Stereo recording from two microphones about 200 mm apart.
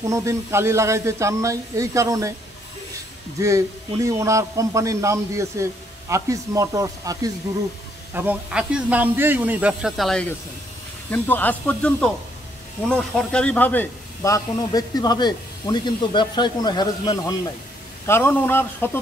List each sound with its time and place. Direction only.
0.0 s a man's voice: 15° right (ahead or behind)
3.3 s a man's voice: 15° right (ahead or behind); by 18.9 s 10° left (ahead or behind)